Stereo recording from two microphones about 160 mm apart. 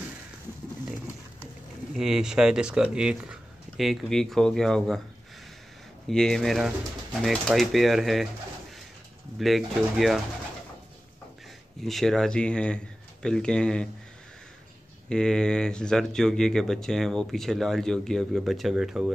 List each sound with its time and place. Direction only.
2.0 s speech: 5° right (ahead or behind)
6.0 s speech: centre (ahead or behind)
9.4 s speech: centre (ahead or behind)
11.8 s speech: centre (ahead or behind)
15.0 s speech: 5° left (ahead or behind)